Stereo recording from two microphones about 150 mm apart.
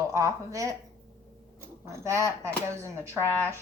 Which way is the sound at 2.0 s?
20° right (ahead or behind).